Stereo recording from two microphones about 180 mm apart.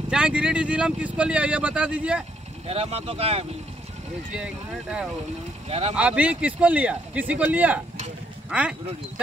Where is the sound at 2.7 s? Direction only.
35° right (ahead or behind).